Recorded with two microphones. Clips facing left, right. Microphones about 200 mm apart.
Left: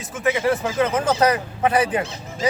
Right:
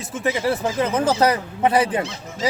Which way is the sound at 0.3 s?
35° right (ahead or behind).